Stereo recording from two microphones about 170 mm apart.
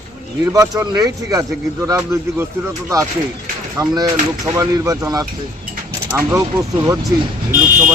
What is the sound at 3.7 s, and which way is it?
Speech, 20° right (ahead or behind).